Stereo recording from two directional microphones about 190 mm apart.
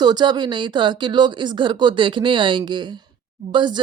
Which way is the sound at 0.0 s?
25° right (ahead or behind).